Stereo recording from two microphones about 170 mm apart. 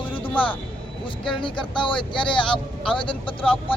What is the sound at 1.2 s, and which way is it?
Speech, 30° left (ahead or behind).